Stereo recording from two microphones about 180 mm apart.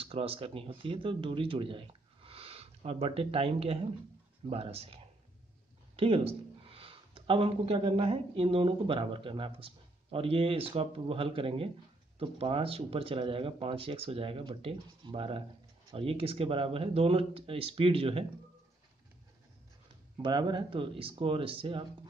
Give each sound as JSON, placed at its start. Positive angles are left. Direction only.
{"t": 0.0, "sound": "speech", "side_deg": -30}
{"t": 20.2, "sound": "speech", "side_deg": -25}